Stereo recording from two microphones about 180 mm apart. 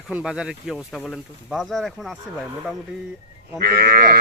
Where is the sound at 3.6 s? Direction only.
60° right (ahead or behind).